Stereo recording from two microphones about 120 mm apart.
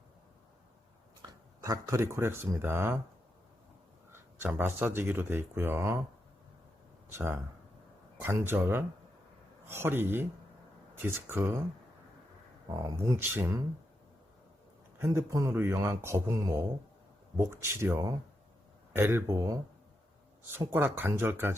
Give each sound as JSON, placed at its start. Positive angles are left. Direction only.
{"t": 1.6, "sound": "speech", "side_deg": -25}
{"t": 4.1, "sound": "speech", "side_deg": -20}
{"t": 7.1, "sound": "speech", "side_deg": -20}
{"t": 13.0, "sound": "speech", "side_deg": -20}
{"t": 14.9, "sound": "speech", "side_deg": -20}